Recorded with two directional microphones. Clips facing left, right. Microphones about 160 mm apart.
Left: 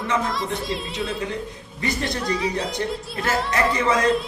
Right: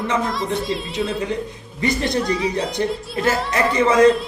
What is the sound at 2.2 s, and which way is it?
Speech, centre (ahead or behind).